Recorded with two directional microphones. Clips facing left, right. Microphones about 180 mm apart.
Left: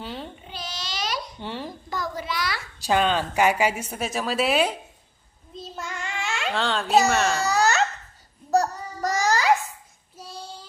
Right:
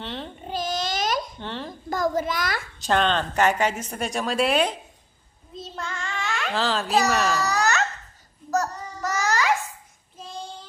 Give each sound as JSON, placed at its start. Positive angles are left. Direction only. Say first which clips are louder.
{"t": 0.0, "sound": "babbling", "louder": "right 1 dB", "side_deg": 5}
{"t": 0.4, "sound": "babbling", "louder": "right 9 dB", "side_deg": -45}
{"t": 1.4, "sound": "babbling", "louder": "even", "side_deg": 10}
{"t": 1.9, "sound": "a child's voice", "louder": "right 7 dB", "side_deg": -45}
{"t": 2.8, "sound": "a woman's voice", "louder": "left 1 dB", "side_deg": 10}
{"t": 5.5, "sound": "child singing", "louder": "right 1 dB", "side_deg": 5}
{"t": 6.5, "sound": "a child's voice", "louder": "left 2 dB", "side_deg": 0}
{"t": 7.4, "sound": "babbling", "louder": "left 2 dB", "side_deg": 30}
{"t": 8.4, "sound": "child singing", "louder": "left 3 dB", "side_deg": 30}